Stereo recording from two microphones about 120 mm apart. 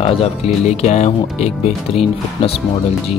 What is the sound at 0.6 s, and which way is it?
Speech, 75° left (ahead or behind).